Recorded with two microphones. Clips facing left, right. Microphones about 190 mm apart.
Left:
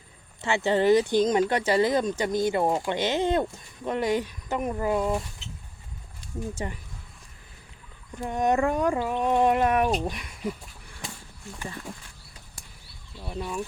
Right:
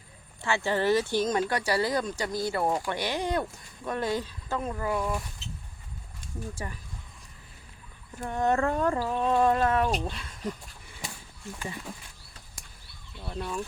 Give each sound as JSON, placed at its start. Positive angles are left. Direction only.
{"t": 0.4, "sound": "speech", "side_deg": 20}
{"t": 6.5, "sound": "speech", "side_deg": 25}
{"t": 8.2, "sound": "speech", "side_deg": 15}
{"t": 10.8, "sound": "a sound", "side_deg": 0}
{"t": 13.1, "sound": "speech", "side_deg": 5}